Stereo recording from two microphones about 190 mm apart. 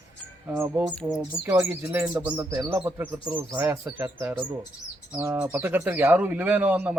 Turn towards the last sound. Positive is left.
turn(degrees=-10)  # may be behind; listen again after turning